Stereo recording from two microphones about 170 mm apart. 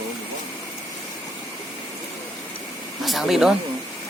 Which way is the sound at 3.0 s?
Centre (ahead or behind).